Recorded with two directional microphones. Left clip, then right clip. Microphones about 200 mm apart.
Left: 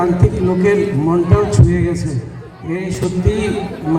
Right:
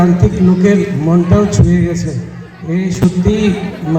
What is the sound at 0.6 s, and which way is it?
A man's voice, 35° left (ahead or behind).